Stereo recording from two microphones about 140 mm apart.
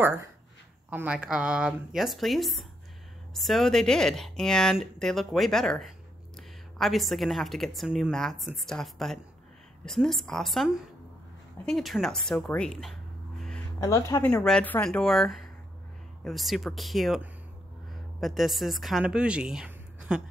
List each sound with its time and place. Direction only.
0.8 s a woman's voice: 10° right (ahead or behind); by 12.9 s 5° left (ahead or behind)
13.7 s speech: 20° left (ahead or behind)
14.2 s a woman's voice: 5° left (ahead or behind)
18.2 s a woman's voice: centre (ahead or behind)